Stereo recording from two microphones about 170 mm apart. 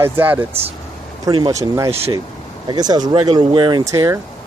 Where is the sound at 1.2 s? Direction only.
25° right (ahead or behind).